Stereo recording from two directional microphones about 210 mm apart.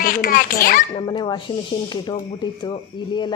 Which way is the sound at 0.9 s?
20° left (ahead or behind).